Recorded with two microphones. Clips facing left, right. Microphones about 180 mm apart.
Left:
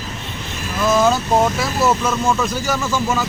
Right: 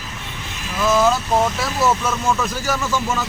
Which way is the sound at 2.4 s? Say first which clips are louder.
Left 2 dB; 5° right (ahead or behind).